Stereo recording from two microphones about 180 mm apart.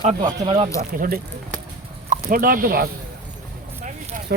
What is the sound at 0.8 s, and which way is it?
Speech, 55° right (ahead or behind).